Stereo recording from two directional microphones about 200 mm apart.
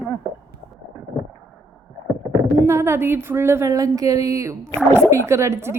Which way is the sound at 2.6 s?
15° right (ahead or behind).